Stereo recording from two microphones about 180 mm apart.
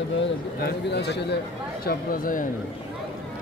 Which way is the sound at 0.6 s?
65° left (ahead or behind).